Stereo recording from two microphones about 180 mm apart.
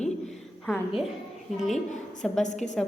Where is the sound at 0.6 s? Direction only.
Centre (ahead or behind).